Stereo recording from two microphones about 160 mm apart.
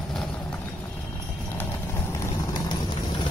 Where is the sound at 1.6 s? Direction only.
15° left (ahead or behind).